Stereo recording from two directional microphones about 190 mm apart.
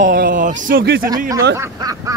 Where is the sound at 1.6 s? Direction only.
20° right (ahead or behind).